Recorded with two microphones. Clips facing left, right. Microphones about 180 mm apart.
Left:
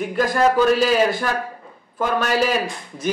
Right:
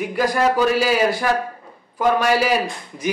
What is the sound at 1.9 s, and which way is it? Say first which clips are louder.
A man's voice: right 3 dB; 10° right (ahead or behind).